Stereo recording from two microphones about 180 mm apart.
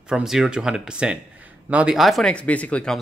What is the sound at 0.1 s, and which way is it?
Speech, 5° right (ahead or behind).